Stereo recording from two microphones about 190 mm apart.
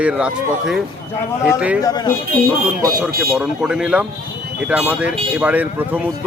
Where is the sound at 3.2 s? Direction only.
5° right (ahead or behind).